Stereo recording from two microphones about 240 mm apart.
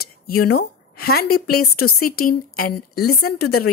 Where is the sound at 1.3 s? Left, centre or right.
Left.